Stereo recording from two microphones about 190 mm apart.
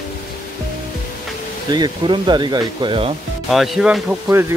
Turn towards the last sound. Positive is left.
turn(degrees=-15)  # may be behind; listen again after turning